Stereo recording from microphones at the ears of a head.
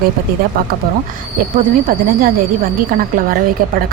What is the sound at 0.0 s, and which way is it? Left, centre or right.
Speech, right.